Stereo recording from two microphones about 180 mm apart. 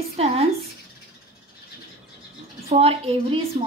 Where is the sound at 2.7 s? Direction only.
35° right (ahead or behind).